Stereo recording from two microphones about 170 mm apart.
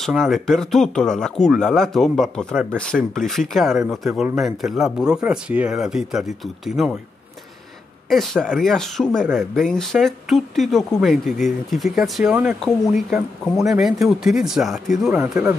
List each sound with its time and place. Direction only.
0.0 s speech: centre (ahead or behind)
8.1 s speech: centre (ahead or behind)
15.2 s speech: 10° right (ahead or behind)